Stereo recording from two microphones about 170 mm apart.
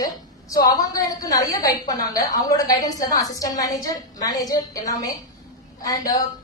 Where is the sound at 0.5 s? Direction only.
20° left (ahead or behind).